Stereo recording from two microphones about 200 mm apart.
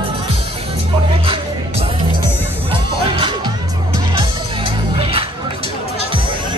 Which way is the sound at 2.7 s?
25° right (ahead or behind).